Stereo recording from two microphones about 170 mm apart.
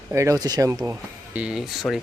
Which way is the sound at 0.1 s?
20° right (ahead or behind).